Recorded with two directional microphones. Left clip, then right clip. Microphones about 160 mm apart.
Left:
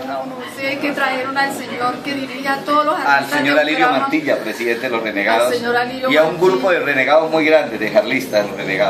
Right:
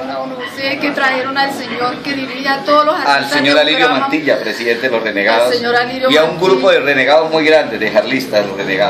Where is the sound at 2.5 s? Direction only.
5° right (ahead or behind).